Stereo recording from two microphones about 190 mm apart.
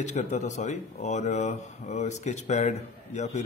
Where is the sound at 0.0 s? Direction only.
40° left (ahead or behind).